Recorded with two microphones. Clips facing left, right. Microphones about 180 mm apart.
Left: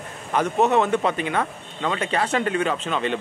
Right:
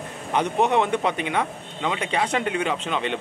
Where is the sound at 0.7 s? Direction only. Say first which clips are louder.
Left 2 dB; 20° right (ahead or behind).